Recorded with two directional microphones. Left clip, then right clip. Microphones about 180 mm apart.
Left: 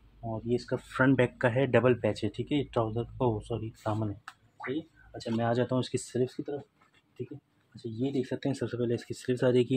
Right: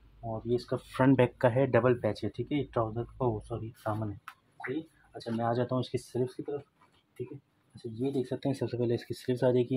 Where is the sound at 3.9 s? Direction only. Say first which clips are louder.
Left 2 dB; centre (ahead or behind).